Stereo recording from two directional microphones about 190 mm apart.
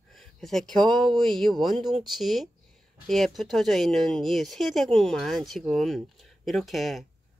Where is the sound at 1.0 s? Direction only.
25° right (ahead or behind).